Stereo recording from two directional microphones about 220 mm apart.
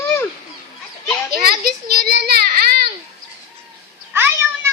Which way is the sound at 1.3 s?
45° right (ahead or behind).